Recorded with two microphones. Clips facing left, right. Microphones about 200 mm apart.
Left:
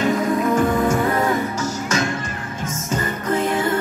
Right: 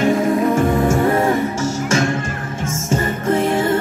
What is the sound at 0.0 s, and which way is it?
Music, 25° right (ahead or behind).